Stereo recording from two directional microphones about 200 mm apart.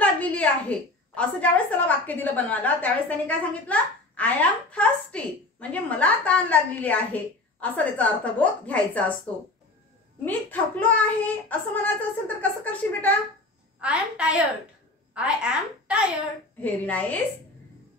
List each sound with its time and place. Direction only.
0.0 s a woman's voice: 5° left (ahead or behind)
10.2 s a woman's voice: 10° left (ahead or behind)
13.7 s a woman's voice: 5° right (ahead or behind)
16.6 s a woman's voice: 5° left (ahead or behind)